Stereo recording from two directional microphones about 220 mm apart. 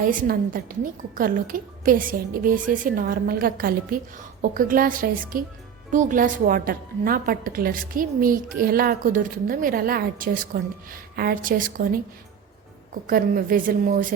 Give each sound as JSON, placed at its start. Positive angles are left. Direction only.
{"t": 0.0, "sound": "a woman's voice", "side_deg": -40}
{"t": 13.1, "sound": "a woman's voice", "side_deg": -40}